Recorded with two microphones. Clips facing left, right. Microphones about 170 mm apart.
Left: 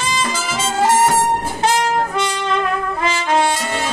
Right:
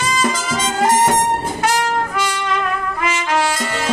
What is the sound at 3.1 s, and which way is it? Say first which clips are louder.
Trumpet: left 2 dB; 25° left (ahead or behind).